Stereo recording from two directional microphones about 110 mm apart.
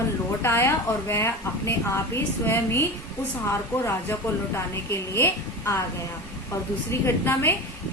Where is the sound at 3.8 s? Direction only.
25° left (ahead or behind).